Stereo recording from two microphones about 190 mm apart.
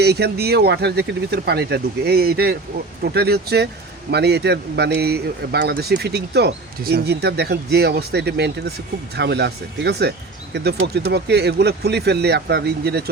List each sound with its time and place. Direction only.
0.0 s speech: 60° right (ahead or behind)